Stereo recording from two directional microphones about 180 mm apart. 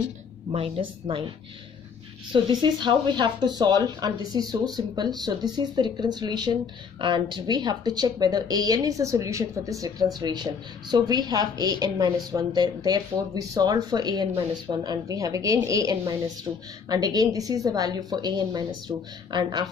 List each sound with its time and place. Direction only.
0.5 s a woman's voice: 30° right (ahead or behind)
2.3 s speech: 25° right (ahead or behind)
19.3 s speech: 25° right (ahead or behind)